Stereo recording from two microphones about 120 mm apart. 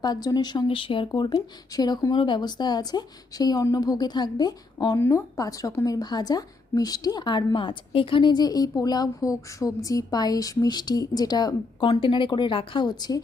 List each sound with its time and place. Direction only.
0.0 s a woman's voice: 35° left (ahead or behind)
4.9 s a woman's voice: 25° left (ahead or behind)